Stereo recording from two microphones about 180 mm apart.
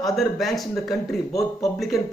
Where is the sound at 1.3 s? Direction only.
20° left (ahead or behind).